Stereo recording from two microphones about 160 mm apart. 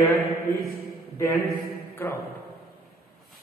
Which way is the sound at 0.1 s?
70° right (ahead or behind).